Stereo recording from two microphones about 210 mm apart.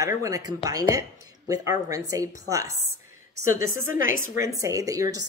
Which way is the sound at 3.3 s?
90° right.